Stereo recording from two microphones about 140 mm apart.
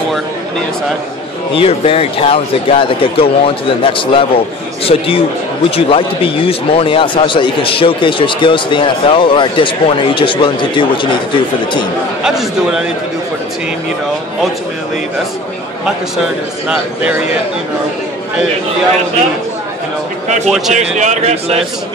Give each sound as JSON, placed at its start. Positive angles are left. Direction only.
{"t": 1.5, "sound": "speech", "side_deg": 40}
{"t": 12.2, "sound": "a man's voice", "side_deg": -5}
{"t": 16.6, "sound": "speech", "side_deg": -10}
{"t": 20.4, "sound": "a man's voice", "side_deg": 0}
{"t": 20.7, "sound": "a man's voice", "side_deg": -55}